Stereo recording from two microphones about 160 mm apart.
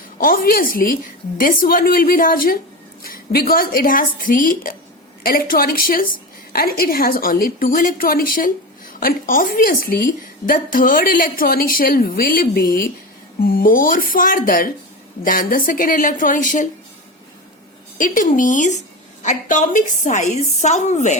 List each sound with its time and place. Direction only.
0.2 s a woman's voice: 65° left (ahead or behind)
17.9 s a woman's voice: 55° left (ahead or behind)